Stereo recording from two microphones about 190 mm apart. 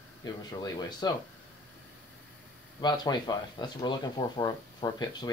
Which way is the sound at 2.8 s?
20° left (ahead or behind).